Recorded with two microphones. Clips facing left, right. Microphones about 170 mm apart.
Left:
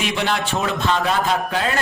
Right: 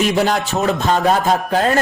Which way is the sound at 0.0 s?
40° right (ahead or behind).